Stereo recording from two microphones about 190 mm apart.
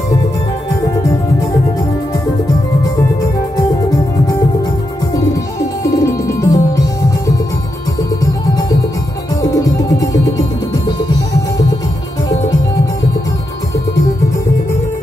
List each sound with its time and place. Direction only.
5.9 s music: 20° left (ahead or behind)
8.2 s music: 20° left (ahead or behind)